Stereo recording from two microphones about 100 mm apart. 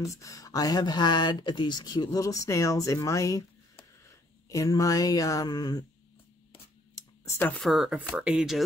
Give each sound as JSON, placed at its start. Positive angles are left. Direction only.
{"t": 0.0, "sound": "speech", "side_deg": 30}
{"t": 2.1, "sound": "speech", "side_deg": 35}
{"t": 7.0, "sound": "a sound", "side_deg": 25}
{"t": 7.9, "sound": "speech", "side_deg": -10}